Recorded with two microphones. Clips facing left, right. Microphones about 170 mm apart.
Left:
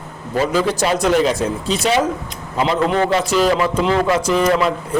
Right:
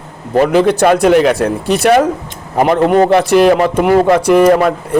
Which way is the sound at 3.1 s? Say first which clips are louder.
Right 7 dB; 60° right (ahead or behind).